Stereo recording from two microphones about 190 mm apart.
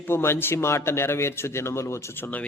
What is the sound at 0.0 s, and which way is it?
A man's voice, 10° left (ahead or behind).